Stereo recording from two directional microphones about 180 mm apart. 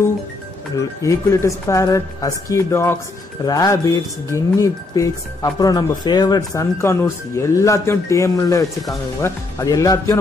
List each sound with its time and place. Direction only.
0.7 s speech: 15° left (ahead or behind)